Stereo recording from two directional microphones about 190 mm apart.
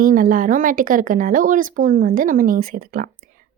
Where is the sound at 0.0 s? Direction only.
45° right (ahead or behind).